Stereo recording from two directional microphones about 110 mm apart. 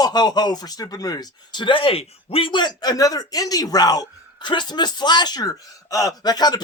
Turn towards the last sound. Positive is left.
turn(degrees=35)  # may be behind; listen again after turning